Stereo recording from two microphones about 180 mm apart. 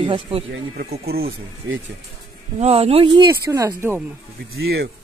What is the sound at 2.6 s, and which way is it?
Speech, 35° right (ahead or behind).